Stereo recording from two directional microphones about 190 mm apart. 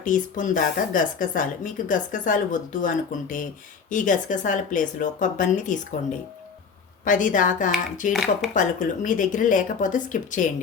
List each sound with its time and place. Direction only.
0.0 s speech: 45° left (ahead or behind)
7.0 s speech: 40° left (ahead or behind)
8.1 s speech: centre (ahead or behind)
8.5 s speech: 40° left (ahead or behind)